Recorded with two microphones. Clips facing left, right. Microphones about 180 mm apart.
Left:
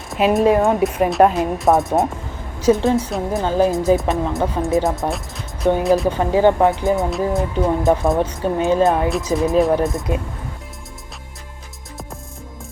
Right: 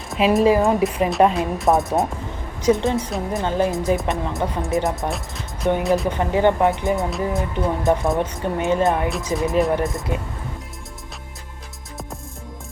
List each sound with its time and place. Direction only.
0.1 s speech: centre (ahead or behind)
10.1 s speech: 20° left (ahead or behind)